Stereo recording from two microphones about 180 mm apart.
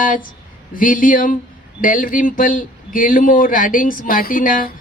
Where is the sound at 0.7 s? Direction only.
50° left (ahead or behind).